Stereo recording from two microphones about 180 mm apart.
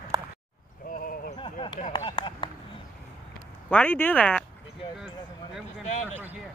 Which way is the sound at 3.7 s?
10° left (ahead or behind).